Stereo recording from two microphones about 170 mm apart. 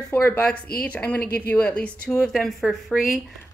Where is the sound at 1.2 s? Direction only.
65° left (ahead or behind).